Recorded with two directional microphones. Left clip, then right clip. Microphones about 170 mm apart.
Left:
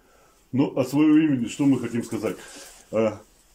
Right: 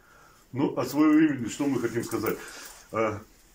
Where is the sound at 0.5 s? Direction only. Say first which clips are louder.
Left 4 dB; 55° left (ahead or behind).